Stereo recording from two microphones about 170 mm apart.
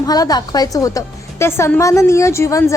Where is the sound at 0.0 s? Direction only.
20° left (ahead or behind).